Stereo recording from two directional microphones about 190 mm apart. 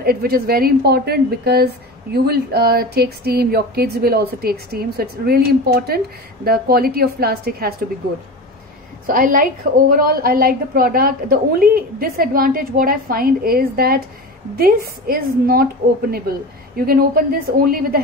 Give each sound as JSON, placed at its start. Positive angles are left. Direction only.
{"t": 0.0, "sound": "a woman's voice", "side_deg": -55}
{"t": 9.0, "sound": "a woman's voice", "side_deg": -45}